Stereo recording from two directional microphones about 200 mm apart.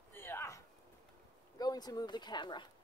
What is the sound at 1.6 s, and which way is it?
Speech, 20° left (ahead or behind).